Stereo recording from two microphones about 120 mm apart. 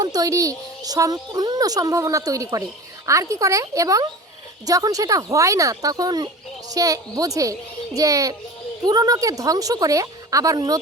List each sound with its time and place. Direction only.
0.0 s speech: 30° right (ahead or behind)